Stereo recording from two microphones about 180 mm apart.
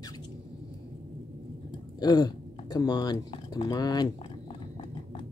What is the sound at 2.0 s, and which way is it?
Speech, 20° left (ahead or behind).